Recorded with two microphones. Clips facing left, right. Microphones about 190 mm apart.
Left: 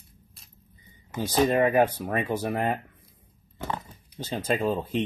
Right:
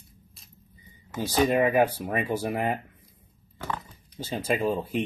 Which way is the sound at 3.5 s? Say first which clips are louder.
Left 1 dB; 20° left (ahead or behind).